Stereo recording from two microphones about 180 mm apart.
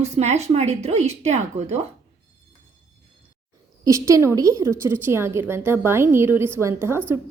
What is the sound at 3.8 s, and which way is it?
A woman's voice, 15° right (ahead or behind).